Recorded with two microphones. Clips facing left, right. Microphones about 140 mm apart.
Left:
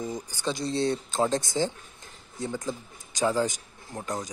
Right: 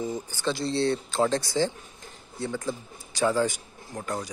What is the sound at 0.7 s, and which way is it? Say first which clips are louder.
Speech: right 1 dB; 45° left (ahead or behind).